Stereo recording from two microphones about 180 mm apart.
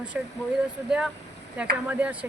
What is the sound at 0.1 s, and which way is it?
Speech, 5° right (ahead or behind).